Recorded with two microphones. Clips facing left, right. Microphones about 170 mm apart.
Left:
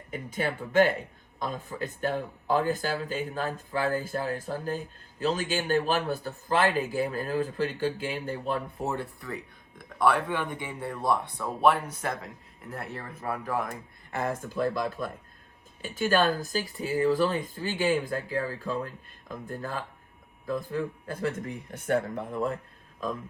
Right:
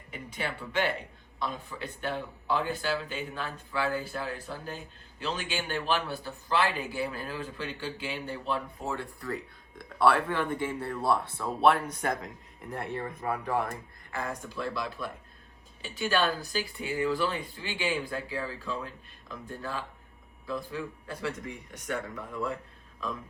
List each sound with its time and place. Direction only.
0.1 s speech: 45° left (ahead or behind)
9.3 s speech: 15° left (ahead or behind)
14.5 s speech: 45° left (ahead or behind)